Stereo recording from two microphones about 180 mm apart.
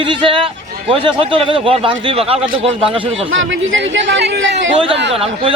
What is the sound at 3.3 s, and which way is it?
Speech, 90° right.